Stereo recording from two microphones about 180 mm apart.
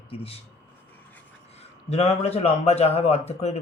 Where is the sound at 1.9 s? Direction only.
35° left (ahead or behind).